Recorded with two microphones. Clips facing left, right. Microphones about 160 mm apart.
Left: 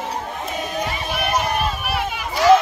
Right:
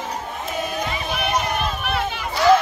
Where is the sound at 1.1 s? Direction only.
5° left (ahead or behind).